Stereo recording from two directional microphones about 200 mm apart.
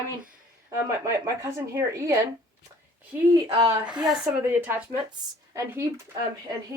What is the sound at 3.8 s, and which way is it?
A woman's voice, 5° right (ahead or behind).